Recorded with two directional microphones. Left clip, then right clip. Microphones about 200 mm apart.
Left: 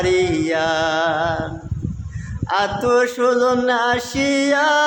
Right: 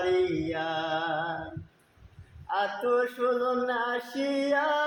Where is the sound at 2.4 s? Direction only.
20° left (ahead or behind).